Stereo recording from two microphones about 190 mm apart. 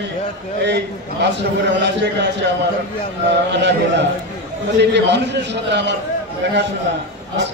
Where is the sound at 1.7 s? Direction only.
65° right (ahead or behind).